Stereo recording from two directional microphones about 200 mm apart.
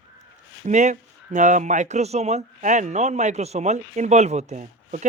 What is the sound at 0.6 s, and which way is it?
Speech, 35° right (ahead or behind).